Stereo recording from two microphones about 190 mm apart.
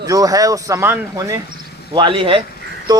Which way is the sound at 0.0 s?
20° right (ahead or behind).